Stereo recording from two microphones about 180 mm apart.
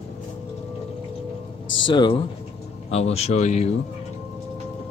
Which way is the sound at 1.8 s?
25° left (ahead or behind).